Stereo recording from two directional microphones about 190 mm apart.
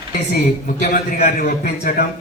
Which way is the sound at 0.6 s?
45° left (ahead or behind).